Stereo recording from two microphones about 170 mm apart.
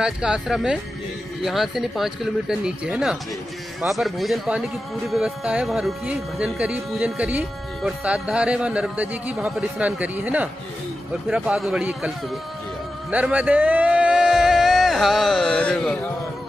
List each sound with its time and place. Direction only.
0.0 s speech: 5° right (ahead or behind)
13.1 s speech: 10° right (ahead or behind)